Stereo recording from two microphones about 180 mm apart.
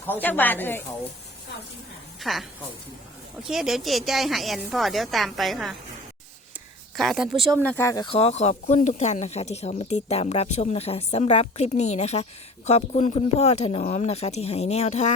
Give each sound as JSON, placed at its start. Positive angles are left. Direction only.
{"t": 0.0, "sound": "a woman's voice", "side_deg": 10}
{"t": 2.2, "sound": "a woman's voice", "side_deg": 0}
{"t": 3.5, "sound": "a woman's voice", "side_deg": 0}
{"t": 6.9, "sound": "a woman's voice", "side_deg": 0}